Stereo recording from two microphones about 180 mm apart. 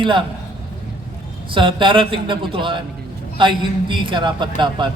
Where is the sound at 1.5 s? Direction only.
25° right (ahead or behind).